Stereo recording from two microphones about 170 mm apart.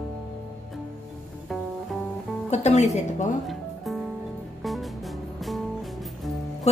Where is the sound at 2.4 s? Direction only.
40° left (ahead or behind).